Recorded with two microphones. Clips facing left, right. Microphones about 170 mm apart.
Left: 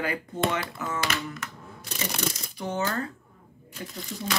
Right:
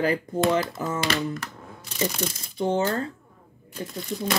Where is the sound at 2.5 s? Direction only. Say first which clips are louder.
Right 6 dB; 30° right (ahead or behind).